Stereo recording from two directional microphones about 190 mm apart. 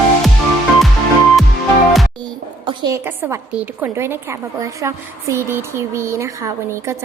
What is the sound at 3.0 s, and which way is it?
A woman's voice, 10° right (ahead or behind).